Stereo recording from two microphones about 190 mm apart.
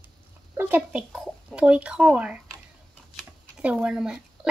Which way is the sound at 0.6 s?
10° right (ahead or behind).